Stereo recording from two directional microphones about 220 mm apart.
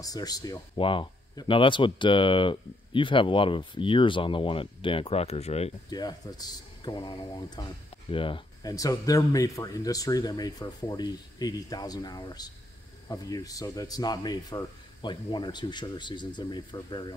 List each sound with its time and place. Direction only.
0.0 s speech: 15° left (ahead or behind)